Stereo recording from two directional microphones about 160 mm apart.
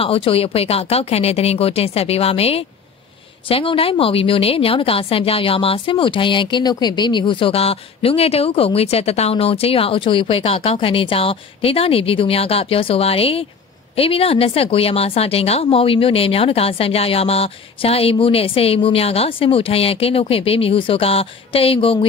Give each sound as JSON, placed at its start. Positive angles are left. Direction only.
{"t": 0.0, "sound": "a woman's voice", "side_deg": 35}